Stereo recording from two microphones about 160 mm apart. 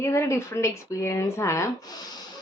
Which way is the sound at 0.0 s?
15° left (ahead or behind).